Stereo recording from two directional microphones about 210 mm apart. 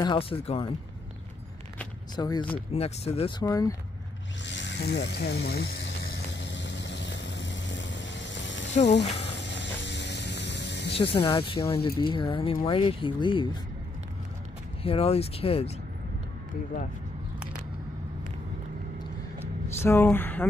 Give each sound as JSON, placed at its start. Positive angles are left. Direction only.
{"t": 0.0, "sound": "speech", "side_deg": 25}
{"t": 2.1, "sound": "speech", "side_deg": 20}
{"t": 4.5, "sound": "a sound", "side_deg": 60}
{"t": 8.8, "sound": "speech", "side_deg": 35}
{"t": 9.1, "sound": "ratchet", "side_deg": 55}
{"t": 11.1, "sound": "speech", "side_deg": 25}
{"t": 14.8, "sound": "speech", "side_deg": 30}
{"t": 19.8, "sound": "speech", "side_deg": 10}